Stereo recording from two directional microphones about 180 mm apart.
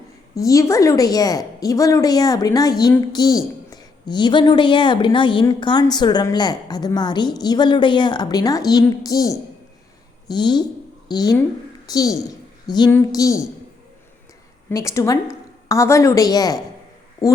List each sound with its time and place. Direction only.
0.3 s a woman's voice: 20° left (ahead or behind)
12.6 s female singing: 25° left (ahead or behind)
12.9 s a woman's voice: 15° left (ahead or behind)
14.7 s a woman's voice: 20° left (ahead or behind)